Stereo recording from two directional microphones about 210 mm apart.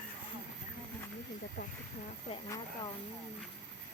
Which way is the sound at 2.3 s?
20° left (ahead or behind).